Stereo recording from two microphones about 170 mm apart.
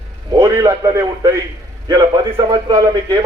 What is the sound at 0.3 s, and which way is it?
A man's voice, 25° right (ahead or behind).